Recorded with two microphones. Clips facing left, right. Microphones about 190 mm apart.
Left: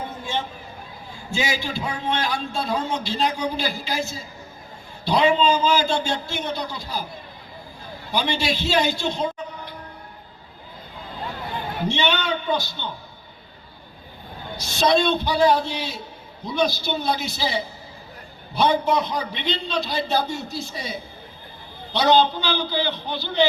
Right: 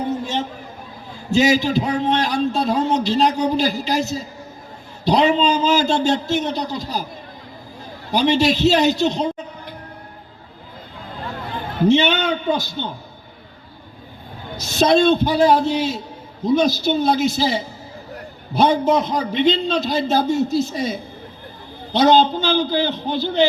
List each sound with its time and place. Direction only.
1.3 s a man's voice: 40° right (ahead or behind)
8.1 s a man's voice: 40° right (ahead or behind)
12.2 s a man's voice: 45° right (ahead or behind)
14.6 s a man's voice: 45° right (ahead or behind)
21.9 s a man's voice: 45° right (ahead or behind)